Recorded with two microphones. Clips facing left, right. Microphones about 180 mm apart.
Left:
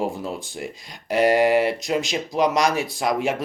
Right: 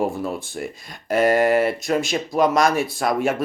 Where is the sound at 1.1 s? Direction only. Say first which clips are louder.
Right 1 dB; 50° right (ahead or behind).